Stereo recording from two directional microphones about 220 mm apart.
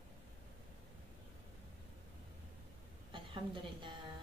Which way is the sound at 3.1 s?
20° right (ahead or behind).